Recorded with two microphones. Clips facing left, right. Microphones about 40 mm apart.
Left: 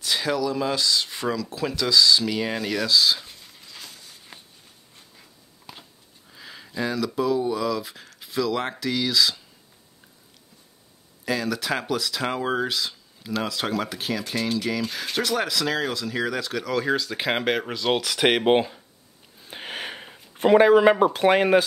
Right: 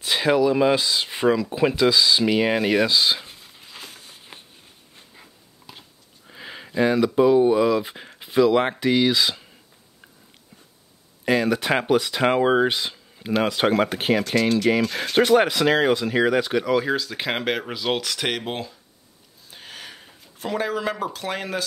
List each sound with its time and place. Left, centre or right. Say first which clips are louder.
0.0 s speech: right 5 dB; right
5.7 s biting: left 1 dB; centre
6.2 s speech: right 5 dB; right
11.2 s speech: right 5 dB; right
16.8 s speech: even; centre
18.4 s speech: left 11 dB; left
19.4 s a sound: left 6 dB; left